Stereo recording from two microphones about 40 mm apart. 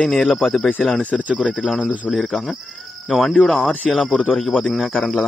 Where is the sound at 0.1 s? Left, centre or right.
Centre.